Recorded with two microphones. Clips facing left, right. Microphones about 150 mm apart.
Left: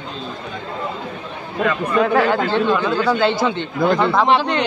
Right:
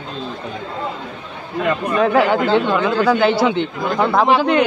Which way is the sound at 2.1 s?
15° right (ahead or behind).